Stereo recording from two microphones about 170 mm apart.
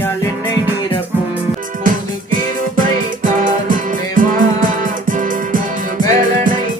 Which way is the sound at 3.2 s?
50° right (ahead or behind).